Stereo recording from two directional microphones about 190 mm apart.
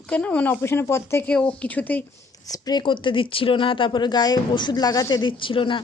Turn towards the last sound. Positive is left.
turn(degrees=25)  # may be behind; listen again after turning